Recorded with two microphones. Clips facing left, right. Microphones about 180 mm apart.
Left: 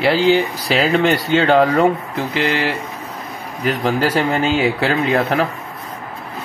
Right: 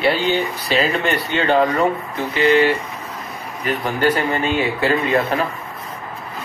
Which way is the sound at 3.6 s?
90° left.